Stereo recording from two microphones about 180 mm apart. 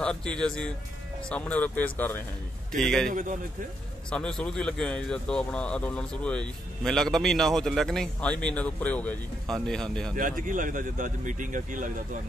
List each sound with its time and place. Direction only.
0.0 s speech: 5° left (ahead or behind)
3.1 s speech: 45° right (ahead or behind)
4.1 s speech: 5° left (ahead or behind)
10.1 s speech: 50° right (ahead or behind)